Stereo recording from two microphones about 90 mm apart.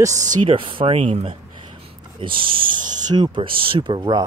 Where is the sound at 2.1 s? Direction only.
75° right (ahead or behind).